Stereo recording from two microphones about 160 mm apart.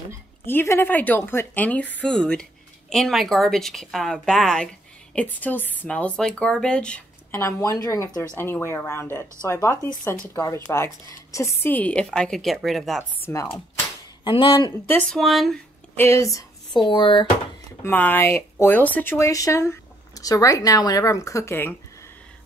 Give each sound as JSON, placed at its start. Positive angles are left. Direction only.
{"t": 0.5, "sound": "speech", "side_deg": 15}
{"t": 13.2, "sound": "speech", "side_deg": 20}
{"t": 13.5, "sound": "a sound", "side_deg": 35}
{"t": 14.9, "sound": "speech", "side_deg": 5}
{"t": 16.0, "sound": "speech", "side_deg": 15}
{"t": 17.8, "sound": "speech", "side_deg": 10}